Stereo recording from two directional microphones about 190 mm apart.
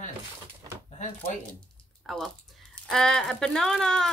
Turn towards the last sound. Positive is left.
turn(degrees=5)  # may be behind; listen again after turning